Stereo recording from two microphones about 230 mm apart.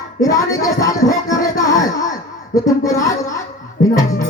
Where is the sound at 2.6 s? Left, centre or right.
Centre.